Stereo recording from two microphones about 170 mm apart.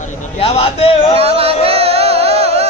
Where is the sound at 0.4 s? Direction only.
35° left (ahead or behind).